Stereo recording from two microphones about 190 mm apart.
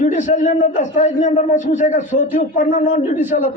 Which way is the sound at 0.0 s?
40° left (ahead or behind).